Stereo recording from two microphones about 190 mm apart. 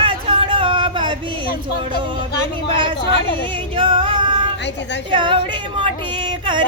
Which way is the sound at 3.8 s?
25° right (ahead or behind).